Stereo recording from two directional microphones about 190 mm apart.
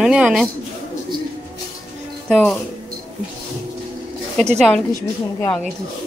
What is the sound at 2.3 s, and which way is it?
Speech, 5° left (ahead or behind).